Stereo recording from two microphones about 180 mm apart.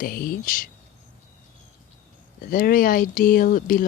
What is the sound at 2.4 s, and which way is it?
Speech, 55° left (ahead or behind).